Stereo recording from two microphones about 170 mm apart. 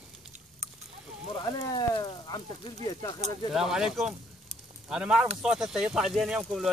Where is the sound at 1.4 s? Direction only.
25° left (ahead or behind).